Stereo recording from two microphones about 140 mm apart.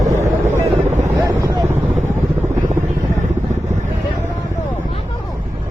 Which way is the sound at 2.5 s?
65° right (ahead or behind).